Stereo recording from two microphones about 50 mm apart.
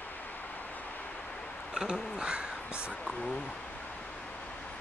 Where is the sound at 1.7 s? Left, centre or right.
Centre.